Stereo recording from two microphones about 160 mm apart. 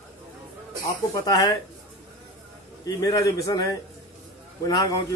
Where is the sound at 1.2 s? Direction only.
20° left (ahead or behind).